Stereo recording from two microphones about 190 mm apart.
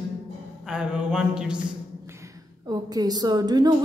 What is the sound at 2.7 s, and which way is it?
A woman's voice, 20° right (ahead or behind).